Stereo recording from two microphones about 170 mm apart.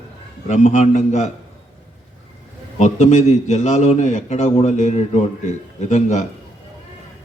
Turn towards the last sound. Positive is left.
turn(degrees=40)  # may be behind; listen again after turning